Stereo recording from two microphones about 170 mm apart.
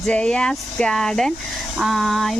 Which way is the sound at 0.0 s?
5° left (ahead or behind).